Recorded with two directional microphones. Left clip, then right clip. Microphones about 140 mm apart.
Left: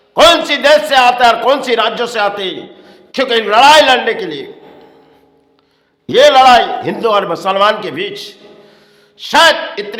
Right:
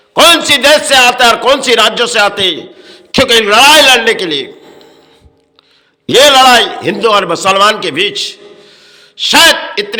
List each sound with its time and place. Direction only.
0.1 s a man's voice: 15° right (ahead or behind)
6.1 s a man's voice: 20° right (ahead or behind)